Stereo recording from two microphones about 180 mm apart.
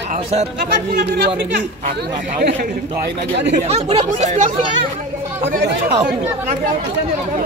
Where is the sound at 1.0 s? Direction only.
60° right (ahead or behind).